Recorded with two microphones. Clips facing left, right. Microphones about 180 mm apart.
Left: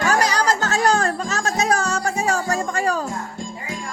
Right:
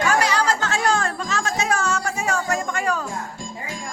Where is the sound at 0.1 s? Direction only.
40° left (ahead or behind).